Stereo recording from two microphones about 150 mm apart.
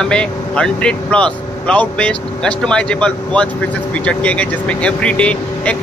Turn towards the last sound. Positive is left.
turn(degrees=10)  # may be behind; listen again after turning